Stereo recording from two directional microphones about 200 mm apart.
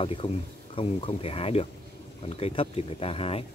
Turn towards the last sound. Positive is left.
turn(degrees=30)  # may be behind; listen again after turning